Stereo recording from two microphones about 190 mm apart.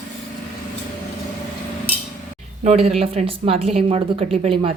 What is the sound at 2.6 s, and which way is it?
A woman's voice, 35° right (ahead or behind).